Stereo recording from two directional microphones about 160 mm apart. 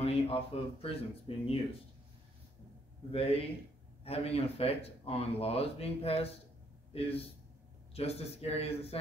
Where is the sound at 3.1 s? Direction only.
35° left (ahead or behind).